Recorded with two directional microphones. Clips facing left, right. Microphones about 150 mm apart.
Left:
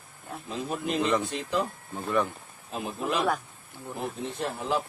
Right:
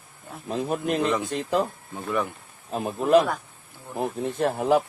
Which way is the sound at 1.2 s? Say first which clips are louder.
Right 4 dB; 45° right (ahead or behind).